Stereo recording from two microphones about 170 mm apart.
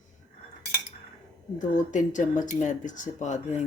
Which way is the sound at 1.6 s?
45° left (ahead or behind).